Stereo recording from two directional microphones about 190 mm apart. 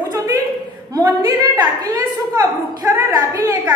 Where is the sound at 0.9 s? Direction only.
20° right (ahead or behind).